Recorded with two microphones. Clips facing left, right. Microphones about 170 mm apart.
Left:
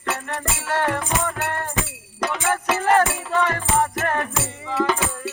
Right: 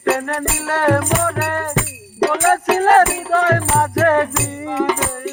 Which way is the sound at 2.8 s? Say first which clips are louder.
Right 5 dB; 80° right.